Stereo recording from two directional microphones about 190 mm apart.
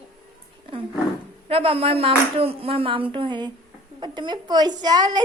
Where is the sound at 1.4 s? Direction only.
30° right (ahead or behind).